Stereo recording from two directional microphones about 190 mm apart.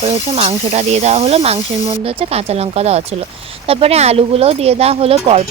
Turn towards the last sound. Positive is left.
turn(degrees=-30)  # may be behind; listen again after turning